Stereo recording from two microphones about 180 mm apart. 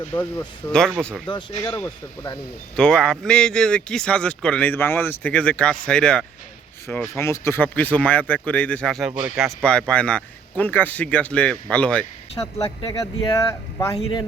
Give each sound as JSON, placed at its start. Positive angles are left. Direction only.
{"t": 0.1, "sound": "speech", "side_deg": 10}
{"t": 1.3, "sound": "speech", "side_deg": 25}
{"t": 2.7, "sound": "speech", "side_deg": 5}
{"t": 9.6, "sound": "speech", "side_deg": 5}
{"t": 12.6, "sound": "speech", "side_deg": 25}